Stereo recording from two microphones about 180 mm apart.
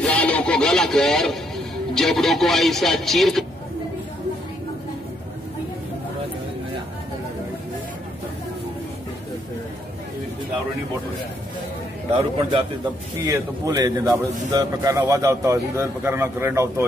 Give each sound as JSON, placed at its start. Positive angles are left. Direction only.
{"t": 0.0, "sound": "a sound", "side_deg": 5}
{"t": 2.0, "sound": "speech", "side_deg": 0}
{"t": 12.2, "sound": "a man's voice", "side_deg": -25}